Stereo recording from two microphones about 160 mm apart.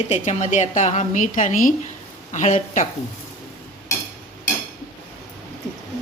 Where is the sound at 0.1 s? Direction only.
45° left (ahead or behind).